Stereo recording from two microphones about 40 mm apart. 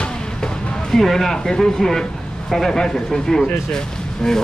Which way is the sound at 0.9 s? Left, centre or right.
Centre.